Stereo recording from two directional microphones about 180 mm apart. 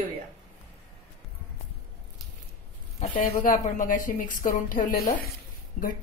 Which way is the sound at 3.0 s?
45° left (ahead or behind).